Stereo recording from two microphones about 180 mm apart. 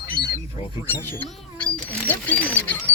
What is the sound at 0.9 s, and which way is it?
Speech, 10° left (ahead or behind).